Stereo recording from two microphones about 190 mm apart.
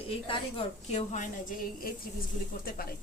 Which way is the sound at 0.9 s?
40° left (ahead or behind).